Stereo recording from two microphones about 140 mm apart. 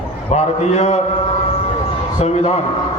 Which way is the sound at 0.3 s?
55° left (ahead or behind).